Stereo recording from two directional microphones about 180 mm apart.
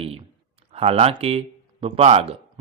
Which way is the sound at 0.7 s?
35° right (ahead or behind).